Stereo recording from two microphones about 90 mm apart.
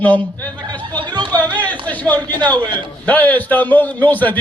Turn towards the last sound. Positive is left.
turn(degrees=20)  # may be behind; listen again after turning